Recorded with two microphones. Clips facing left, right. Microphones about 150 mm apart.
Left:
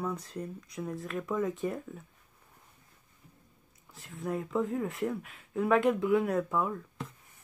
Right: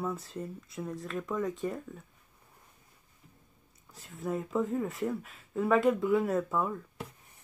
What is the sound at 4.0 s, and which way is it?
Speech, centre (ahead or behind).